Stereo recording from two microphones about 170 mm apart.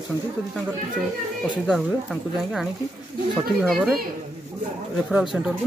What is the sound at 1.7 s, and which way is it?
Speech, centre (ahead or behind).